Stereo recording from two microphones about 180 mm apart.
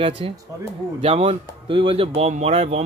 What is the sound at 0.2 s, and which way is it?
Speech, 30° right (ahead or behind).